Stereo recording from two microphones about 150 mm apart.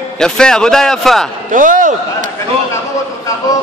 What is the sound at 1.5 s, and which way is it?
Speech, 60° right (ahead or behind).